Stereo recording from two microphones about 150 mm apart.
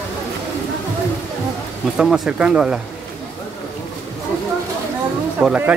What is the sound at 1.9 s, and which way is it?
Speech, 5° right (ahead or behind).